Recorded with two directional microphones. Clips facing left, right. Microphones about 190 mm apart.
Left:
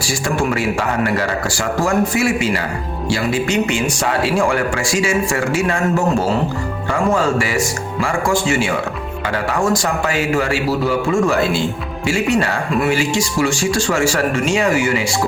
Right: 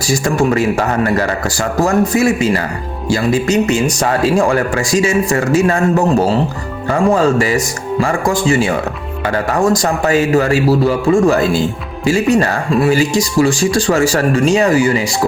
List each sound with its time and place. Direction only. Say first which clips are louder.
0.1 s speech: right 6 dB; 40° right (ahead or behind)
6.9 s speech: right 5 dB; 35° right (ahead or behind)